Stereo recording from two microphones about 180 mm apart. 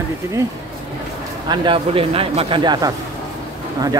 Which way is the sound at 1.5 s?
25° right (ahead or behind).